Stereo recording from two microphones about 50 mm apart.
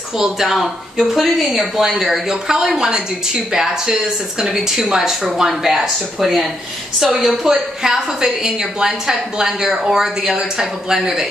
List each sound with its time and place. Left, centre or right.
0.2 s a woman's voice: centre